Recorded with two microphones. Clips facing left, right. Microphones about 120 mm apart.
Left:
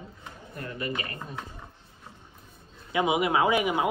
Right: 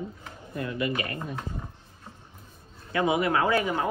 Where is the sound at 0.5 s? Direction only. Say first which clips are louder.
Right 5 dB; 40° left (ahead or behind).